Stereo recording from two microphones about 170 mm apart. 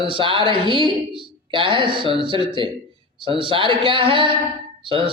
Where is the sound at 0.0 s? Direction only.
30° right (ahead or behind).